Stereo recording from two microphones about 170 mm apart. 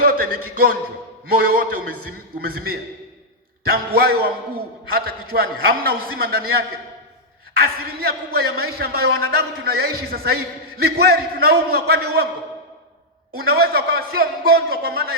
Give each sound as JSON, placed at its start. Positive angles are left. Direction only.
{"t": 0.0, "sound": "a man's voice", "side_deg": -60}
{"t": 13.4, "sound": "a man's voice", "side_deg": -65}